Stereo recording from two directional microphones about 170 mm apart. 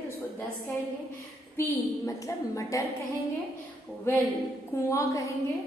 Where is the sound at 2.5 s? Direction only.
20° left (ahead or behind).